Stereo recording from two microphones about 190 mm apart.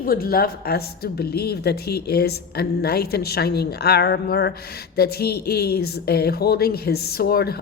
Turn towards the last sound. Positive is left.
turn(degrees=55)  # may be behind; listen again after turning